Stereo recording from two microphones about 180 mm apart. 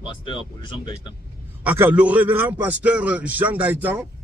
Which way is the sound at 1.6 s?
10° right (ahead or behind).